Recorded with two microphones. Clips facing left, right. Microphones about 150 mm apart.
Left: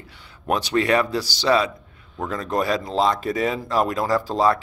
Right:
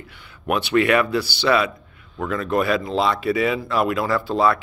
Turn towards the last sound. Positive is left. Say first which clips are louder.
# even
turn(degrees=35)  # may be behind; listen again after turning